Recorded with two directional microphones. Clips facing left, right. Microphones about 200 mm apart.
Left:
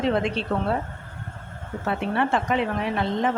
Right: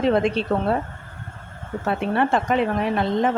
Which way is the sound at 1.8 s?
45° right (ahead or behind).